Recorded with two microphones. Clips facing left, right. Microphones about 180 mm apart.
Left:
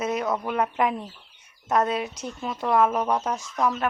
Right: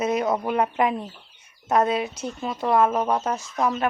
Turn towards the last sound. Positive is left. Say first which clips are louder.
# right 1 dB
turn(degrees=-10)  # may be behind; listen again after turning